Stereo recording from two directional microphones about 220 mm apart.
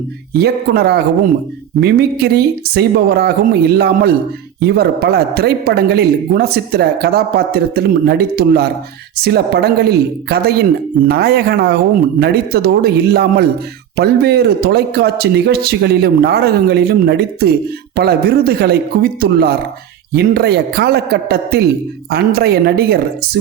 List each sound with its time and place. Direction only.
0.3 s speech: 45° right (ahead or behind)